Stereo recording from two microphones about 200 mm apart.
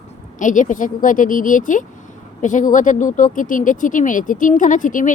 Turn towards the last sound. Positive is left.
turn(degrees=40)  # may be behind; listen again after turning